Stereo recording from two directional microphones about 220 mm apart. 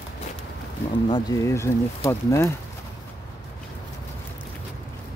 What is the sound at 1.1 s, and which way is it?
Speech, 15° left (ahead or behind).